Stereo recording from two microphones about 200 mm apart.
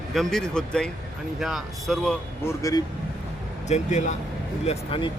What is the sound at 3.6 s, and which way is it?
Speech, 35° left (ahead or behind).